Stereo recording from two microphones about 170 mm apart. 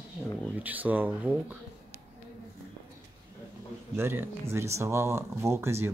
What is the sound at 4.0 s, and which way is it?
Speech, 15° right (ahead or behind).